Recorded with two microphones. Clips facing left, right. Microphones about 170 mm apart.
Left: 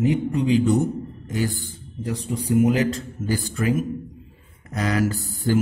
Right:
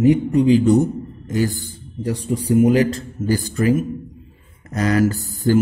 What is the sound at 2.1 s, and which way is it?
Mantra, 35° right (ahead or behind).